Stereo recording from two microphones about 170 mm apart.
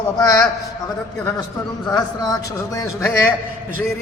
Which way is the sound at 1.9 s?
25° left (ahead or behind).